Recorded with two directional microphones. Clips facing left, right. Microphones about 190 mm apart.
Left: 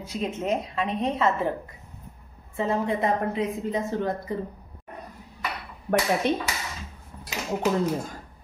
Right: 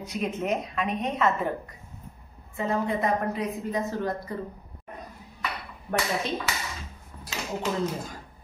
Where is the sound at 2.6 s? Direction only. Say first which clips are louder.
Left 2 dB; 25° left (ahead or behind).